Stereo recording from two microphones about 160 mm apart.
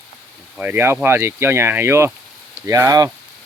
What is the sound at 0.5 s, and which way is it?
Speech, 10° right (ahead or behind).